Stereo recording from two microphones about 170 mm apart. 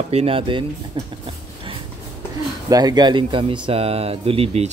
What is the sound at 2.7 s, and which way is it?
Speech, 25° right (ahead or behind).